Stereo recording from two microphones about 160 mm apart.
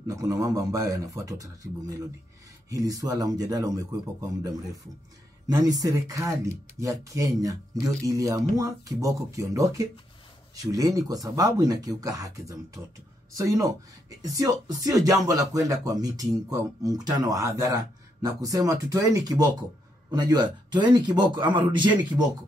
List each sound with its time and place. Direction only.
0.1 s speech: 20° right (ahead or behind)